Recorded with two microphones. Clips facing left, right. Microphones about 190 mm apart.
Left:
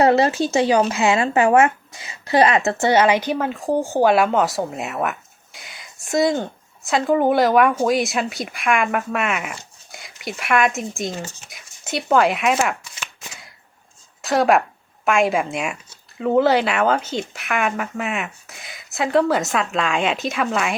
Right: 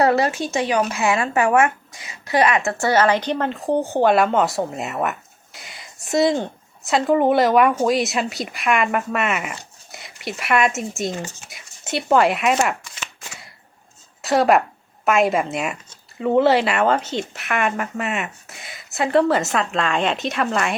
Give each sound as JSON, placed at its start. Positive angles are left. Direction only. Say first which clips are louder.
{"t": 0.0, "sound": "a woman's voice", "louder": "left 2 dB", "side_deg": 25}